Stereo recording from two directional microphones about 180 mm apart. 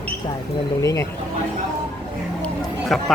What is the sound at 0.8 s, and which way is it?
Speech, 15° left (ahead or behind).